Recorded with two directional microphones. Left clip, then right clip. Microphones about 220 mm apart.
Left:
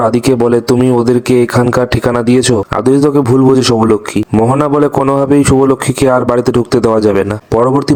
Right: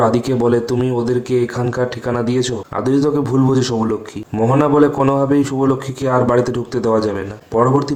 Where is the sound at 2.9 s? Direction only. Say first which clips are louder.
Left 6 dB; 40° left (ahead or behind).